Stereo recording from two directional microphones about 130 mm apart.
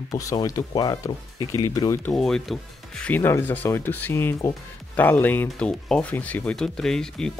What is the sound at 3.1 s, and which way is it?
Speech, 15° left (ahead or behind).